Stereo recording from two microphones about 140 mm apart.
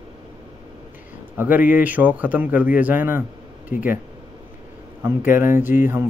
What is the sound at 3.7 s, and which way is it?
Speech, 70° left (ahead or behind).